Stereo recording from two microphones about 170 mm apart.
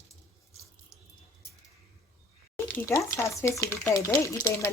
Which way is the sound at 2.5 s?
15° left (ahead or behind).